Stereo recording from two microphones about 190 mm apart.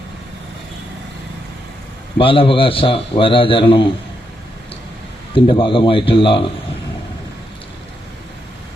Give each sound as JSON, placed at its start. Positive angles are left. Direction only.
{"t": 2.1, "sound": "a man's voice", "side_deg": 30}
{"t": 5.3, "sound": "a man's voice", "side_deg": 25}